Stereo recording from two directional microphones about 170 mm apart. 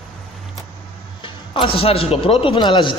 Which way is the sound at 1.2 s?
30° left (ahead or behind).